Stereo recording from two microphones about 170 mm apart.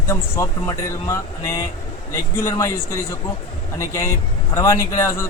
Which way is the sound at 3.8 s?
15° left (ahead or behind).